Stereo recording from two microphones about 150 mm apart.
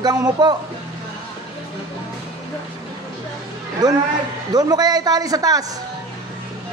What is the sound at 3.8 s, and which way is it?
Speech, 25° right (ahead or behind).